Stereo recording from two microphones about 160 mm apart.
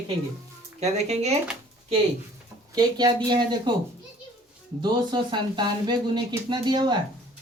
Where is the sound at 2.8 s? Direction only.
25° right (ahead or behind).